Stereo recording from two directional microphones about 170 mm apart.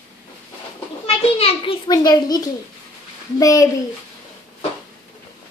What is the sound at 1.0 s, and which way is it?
Children playing, 35° left (ahead or behind).